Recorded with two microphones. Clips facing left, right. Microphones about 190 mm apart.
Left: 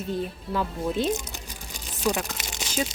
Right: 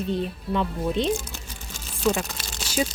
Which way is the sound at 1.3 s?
15° left (ahead or behind).